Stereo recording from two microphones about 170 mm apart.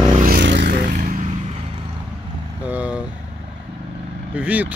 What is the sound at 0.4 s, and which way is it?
Vehicle, 90° right.